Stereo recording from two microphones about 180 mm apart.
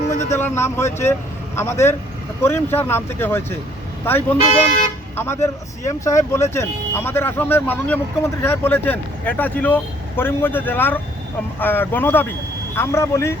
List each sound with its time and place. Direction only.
0.3 s speech: 15° left (ahead or behind)
4.5 s speech: 35° left (ahead or behind)
5.1 s speech: 15° left (ahead or behind)